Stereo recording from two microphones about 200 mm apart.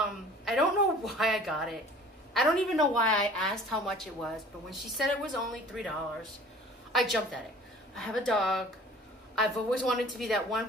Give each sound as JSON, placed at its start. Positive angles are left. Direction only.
{"t": 0.0, "sound": "a sound", "side_deg": 0}
{"t": 2.3, "sound": "a woman's voice", "side_deg": 0}
{"t": 6.9, "sound": "a woman's voice", "side_deg": 0}